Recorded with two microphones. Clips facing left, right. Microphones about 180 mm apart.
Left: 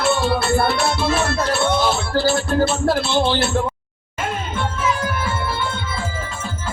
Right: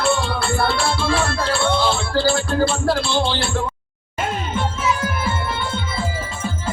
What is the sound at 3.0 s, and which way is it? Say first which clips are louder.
Music: left 2 dB; 25° left (ahead or behind).